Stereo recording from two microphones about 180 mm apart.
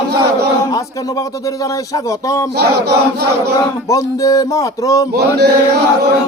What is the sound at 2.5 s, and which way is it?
Battle cry, 65° right (ahead or behind).